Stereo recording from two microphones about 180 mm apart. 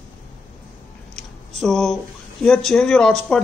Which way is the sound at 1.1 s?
5° left (ahead or behind).